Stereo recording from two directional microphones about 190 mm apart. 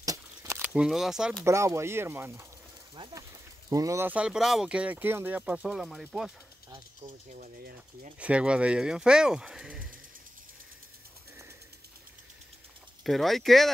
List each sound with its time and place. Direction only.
0.0 s a sound: 15° right (ahead or behind); by 1.4 s centre (ahead or behind)
1.4 s speech: 15° right (ahead or behind)
7.2 s speech: 45° right (ahead or behind)
8.2 s speech: 5° right (ahead or behind)
13.0 s speech: centre (ahead or behind)